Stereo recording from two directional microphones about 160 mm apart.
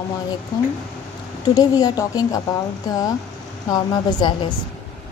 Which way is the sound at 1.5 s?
25° left (ahead or behind).